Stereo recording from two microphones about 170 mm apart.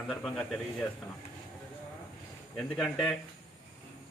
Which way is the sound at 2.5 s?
Centre (ahead or behind).